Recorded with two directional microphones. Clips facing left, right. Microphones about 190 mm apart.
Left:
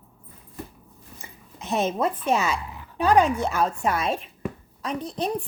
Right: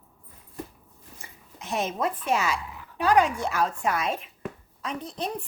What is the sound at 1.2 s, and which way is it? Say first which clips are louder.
A woman's voice: left 4 dB; 25° left (ahead or behind).